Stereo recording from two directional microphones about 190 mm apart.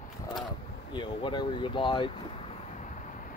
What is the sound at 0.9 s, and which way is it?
Speech, 25° left (ahead or behind).